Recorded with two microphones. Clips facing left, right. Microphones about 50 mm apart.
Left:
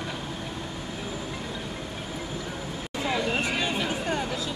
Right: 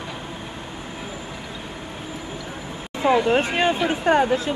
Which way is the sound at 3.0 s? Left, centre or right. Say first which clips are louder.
Right 9 dB; right.